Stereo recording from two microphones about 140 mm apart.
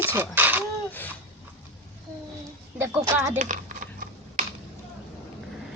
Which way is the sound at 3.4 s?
70° right (ahead or behind).